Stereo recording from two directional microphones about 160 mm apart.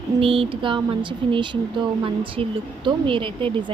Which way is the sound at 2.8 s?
30° right (ahead or behind).